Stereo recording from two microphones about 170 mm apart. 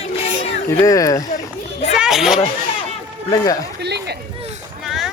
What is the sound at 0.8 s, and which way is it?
Speech, 20° left (ahead or behind).